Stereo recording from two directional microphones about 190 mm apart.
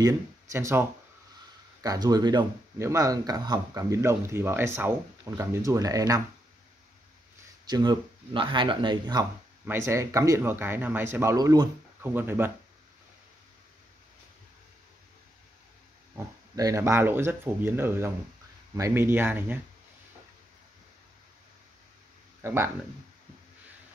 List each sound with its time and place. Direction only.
0.0 s speech: 15° right (ahead or behind)
7.6 s speech: 20° right (ahead or behind)
16.2 s speech: 15° right (ahead or behind)
22.4 s speech: 15° right (ahead or behind)